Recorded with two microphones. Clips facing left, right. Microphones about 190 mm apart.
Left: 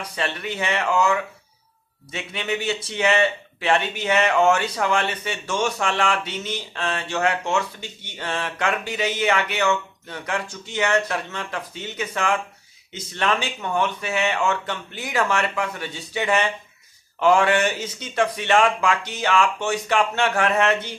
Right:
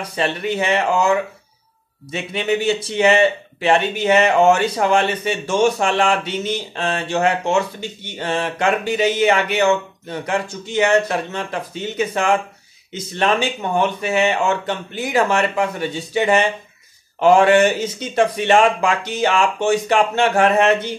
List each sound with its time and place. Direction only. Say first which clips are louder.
0.1 s speech: right 8 dB; 30° right (ahead or behind)
2.3 s speech: right 7 dB; 30° right (ahead or behind)